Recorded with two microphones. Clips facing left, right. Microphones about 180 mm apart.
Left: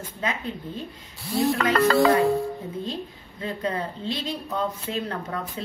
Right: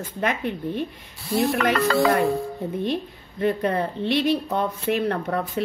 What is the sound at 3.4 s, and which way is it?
Speech, 65° right (ahead or behind).